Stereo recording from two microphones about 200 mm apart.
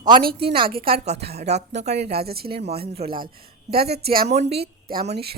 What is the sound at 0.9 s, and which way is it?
Speech, 30° right (ahead or behind).